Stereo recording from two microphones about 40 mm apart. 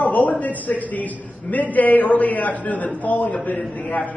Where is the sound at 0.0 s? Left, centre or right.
Left.